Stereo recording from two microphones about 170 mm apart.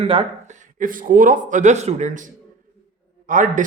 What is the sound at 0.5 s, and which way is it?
Speech, 50° right (ahead or behind).